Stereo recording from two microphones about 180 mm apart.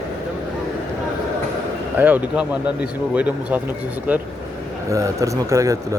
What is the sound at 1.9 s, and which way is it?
Speech, 10° right (ahead or behind).